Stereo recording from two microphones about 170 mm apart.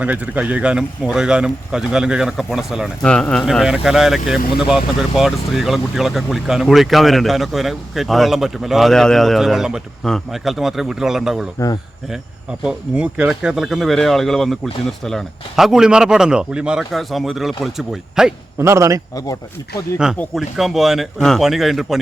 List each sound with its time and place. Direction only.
0.0 s speech: 10° right (ahead or behind)
12.6 s speech: 5° right (ahead or behind)
18.6 s a man's voice: 15° right (ahead or behind)
20.1 s speech: centre (ahead or behind)